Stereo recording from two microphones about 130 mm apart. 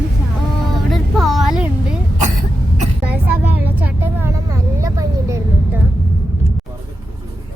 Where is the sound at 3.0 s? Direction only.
15° right (ahead or behind).